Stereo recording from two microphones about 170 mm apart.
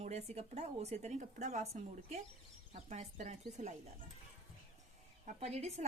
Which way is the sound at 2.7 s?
45° right (ahead or behind).